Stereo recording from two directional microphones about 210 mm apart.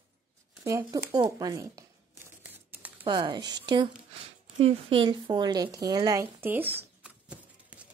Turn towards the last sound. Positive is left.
turn(degrees=-5)  # may be behind; listen again after turning